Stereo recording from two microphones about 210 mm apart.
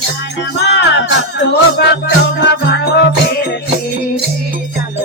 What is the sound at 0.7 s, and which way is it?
Music, 60° left (ahead or behind).